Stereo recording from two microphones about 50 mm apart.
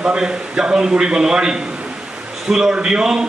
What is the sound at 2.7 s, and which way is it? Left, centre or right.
Speech, centre.